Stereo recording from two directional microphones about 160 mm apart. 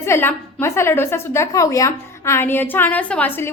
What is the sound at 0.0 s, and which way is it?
A woman's voice, 15° left (ahead or behind).